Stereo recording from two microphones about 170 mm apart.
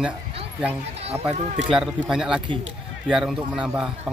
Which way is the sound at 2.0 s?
5° right (ahead or behind).